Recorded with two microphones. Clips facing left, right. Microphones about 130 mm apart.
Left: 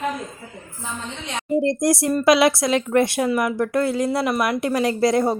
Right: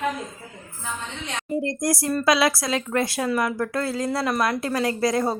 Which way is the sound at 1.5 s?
25° left (ahead or behind).